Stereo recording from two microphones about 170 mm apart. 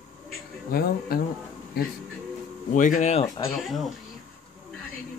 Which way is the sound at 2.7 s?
50° left (ahead or behind).